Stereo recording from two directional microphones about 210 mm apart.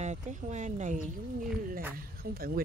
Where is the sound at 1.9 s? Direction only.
45° right (ahead or behind).